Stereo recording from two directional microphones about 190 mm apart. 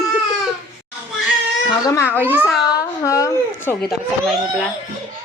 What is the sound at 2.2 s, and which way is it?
Speech, 10° right (ahead or behind).